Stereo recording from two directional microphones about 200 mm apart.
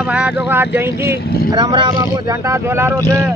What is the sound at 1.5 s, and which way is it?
Speech, 20° right (ahead or behind).